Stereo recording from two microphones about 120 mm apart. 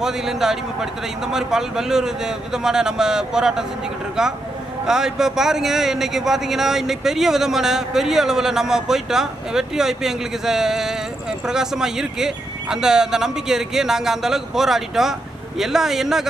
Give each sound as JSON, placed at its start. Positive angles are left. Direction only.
{"t": 0.0, "sound": "speech", "side_deg": -5}